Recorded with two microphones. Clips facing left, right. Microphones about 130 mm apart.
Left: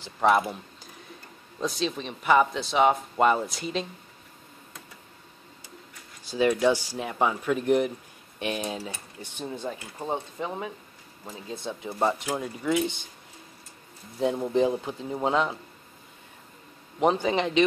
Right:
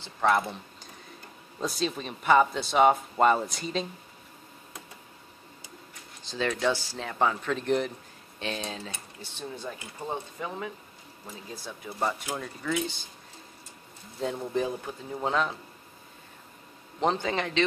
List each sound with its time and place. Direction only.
0.0 s speech: 15° left (ahead or behind)
1.6 s speech: centre (ahead or behind)
6.2 s speech: 10° left (ahead or behind)
14.2 s speech: 20° left (ahead or behind)
17.0 s speech: 10° left (ahead or behind)